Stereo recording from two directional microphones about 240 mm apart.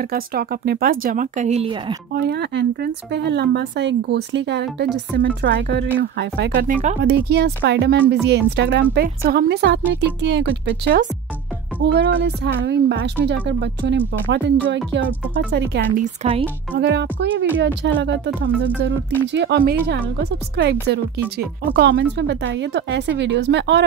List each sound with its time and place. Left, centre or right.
0.1 s speech: right
2.1 s a woman's voice: right
21.7 s a woman's voice: right